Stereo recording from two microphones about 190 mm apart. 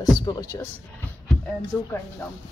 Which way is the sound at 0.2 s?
20° left (ahead or behind).